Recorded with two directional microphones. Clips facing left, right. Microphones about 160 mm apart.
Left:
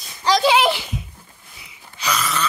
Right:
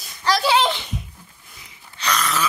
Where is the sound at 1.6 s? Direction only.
10° left (ahead or behind).